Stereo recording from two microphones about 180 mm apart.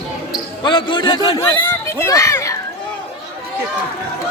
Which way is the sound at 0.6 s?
25° left (ahead or behind).